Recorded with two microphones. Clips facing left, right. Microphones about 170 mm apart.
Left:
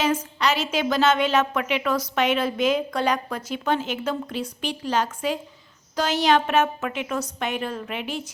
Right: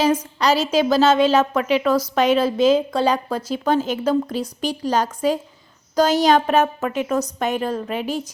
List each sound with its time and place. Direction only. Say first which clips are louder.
0.0 s a woman's voice: right 4 dB; 35° right (ahead or behind)